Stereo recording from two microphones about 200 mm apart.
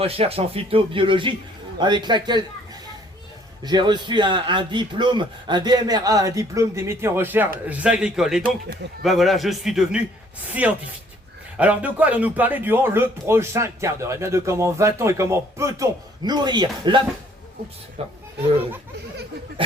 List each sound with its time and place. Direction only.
0.0 s a man's voice: 30° right (ahead or behind)
3.6 s a man's voice: 20° right (ahead or behind)
18.0 s speech: 30° right (ahead or behind)